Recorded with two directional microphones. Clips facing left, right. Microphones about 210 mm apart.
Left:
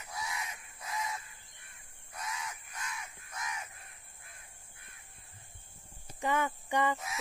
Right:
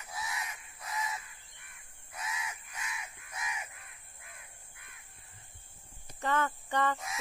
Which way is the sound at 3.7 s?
35° left (ahead or behind).